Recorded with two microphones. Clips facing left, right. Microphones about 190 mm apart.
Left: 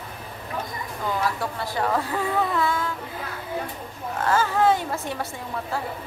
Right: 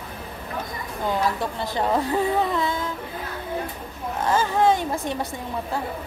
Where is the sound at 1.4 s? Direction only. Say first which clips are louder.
Right 1 dB; 20° right (ahead or behind).